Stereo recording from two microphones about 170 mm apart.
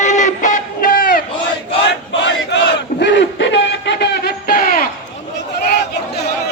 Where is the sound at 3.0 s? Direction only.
90° left; by 4.8 s 60° left (ahead or behind).